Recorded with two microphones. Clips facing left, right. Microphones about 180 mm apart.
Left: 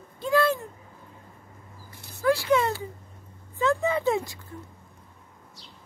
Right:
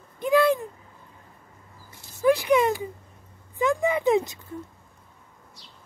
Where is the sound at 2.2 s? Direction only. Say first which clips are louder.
Right 3 dB; 15° right (ahead or behind).